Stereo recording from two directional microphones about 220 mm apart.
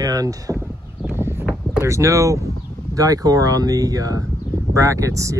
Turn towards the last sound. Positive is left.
turn(degrees=-15)  # may be behind; listen again after turning